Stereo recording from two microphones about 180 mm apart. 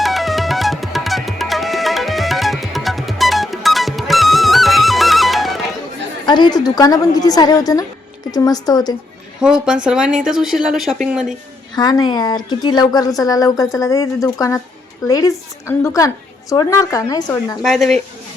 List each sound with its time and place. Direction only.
0.0 s music: centre (ahead or behind)
6.2 s a woman's voice: 25° left (ahead or behind)
9.4 s speech: 5° right (ahead or behind)
11.7 s a woman's voice: 20° left (ahead or behind)
17.6 s speech: centre (ahead or behind)